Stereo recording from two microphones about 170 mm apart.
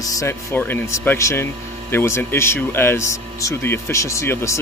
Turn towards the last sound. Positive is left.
turn(degrees=15)  # may be behind; listen again after turning